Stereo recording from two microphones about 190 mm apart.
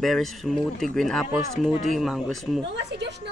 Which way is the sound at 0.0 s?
Centre (ahead or behind).